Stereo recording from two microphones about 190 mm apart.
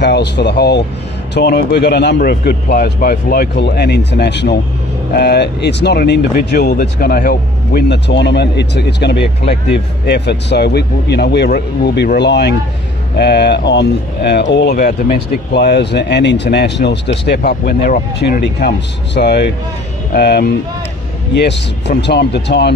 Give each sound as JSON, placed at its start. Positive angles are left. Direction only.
{"t": 0.0, "sound": "speech", "side_deg": 65}
{"t": 14.8, "sound": "speech", "side_deg": 45}
{"t": 17.4, "sound": "speech", "side_deg": 50}